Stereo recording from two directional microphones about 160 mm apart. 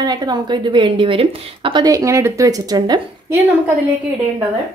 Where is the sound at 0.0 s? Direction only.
25° right (ahead or behind).